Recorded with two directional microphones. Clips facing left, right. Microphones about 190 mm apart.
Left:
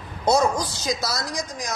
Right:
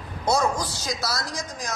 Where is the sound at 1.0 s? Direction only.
15° left (ahead or behind).